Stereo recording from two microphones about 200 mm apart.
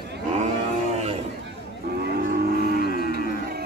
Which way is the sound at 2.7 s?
50° left (ahead or behind).